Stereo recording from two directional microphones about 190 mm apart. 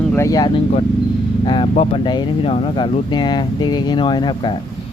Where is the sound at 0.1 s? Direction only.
15° left (ahead or behind).